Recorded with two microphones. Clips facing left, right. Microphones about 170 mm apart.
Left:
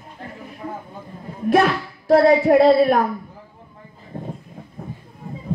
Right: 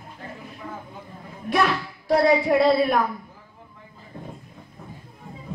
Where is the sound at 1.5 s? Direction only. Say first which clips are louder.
Left 5 dB; 45° left (ahead or behind).